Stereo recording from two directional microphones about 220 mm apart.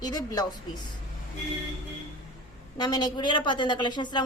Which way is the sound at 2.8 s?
20° left (ahead or behind).